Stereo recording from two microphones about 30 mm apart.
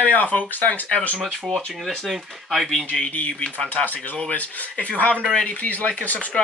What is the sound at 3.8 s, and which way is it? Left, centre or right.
Speech, left.